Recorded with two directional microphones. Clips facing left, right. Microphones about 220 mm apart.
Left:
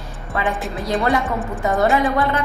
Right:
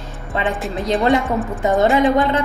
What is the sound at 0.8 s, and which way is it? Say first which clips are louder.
Speech: right 3 dB; 25° right (ahead or behind).